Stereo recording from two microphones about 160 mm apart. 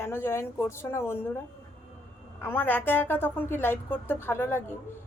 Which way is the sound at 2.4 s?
10° left (ahead or behind).